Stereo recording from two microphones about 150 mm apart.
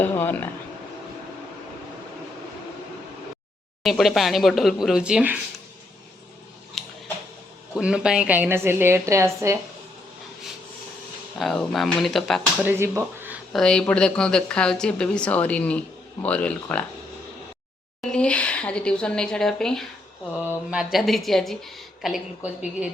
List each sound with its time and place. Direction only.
0.0 s speech: 15° left (ahead or behind)
3.8 s speech: centre (ahead or behind)
7.7 s a woman's voice: 5° right (ahead or behind)
11.3 s speech: centre (ahead or behind)
12.6 s speech: 15° right (ahead or behind)
13.5 s speech: 5° left (ahead or behind)
18.1 s a woman's voice: 5° left (ahead or behind)